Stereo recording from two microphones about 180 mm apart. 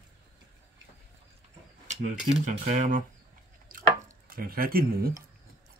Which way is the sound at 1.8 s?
40° right (ahead or behind).